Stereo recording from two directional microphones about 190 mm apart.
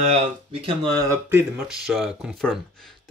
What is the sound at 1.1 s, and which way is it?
Speech, 10° right (ahead or behind).